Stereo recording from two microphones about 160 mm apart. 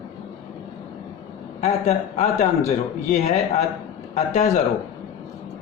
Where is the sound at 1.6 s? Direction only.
45° left (ahead or behind).